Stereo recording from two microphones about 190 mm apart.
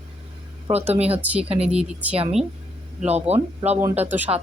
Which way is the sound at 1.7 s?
5° right (ahead or behind).